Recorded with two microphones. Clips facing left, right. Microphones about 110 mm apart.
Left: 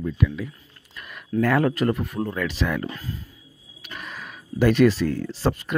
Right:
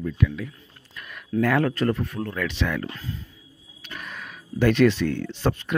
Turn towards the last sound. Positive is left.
turn(degrees=5)  # may be behind; listen again after turning